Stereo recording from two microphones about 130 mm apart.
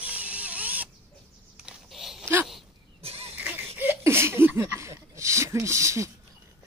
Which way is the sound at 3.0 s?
50° right (ahead or behind).